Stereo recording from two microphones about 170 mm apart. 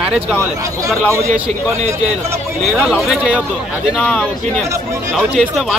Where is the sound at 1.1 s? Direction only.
15° right (ahead or behind).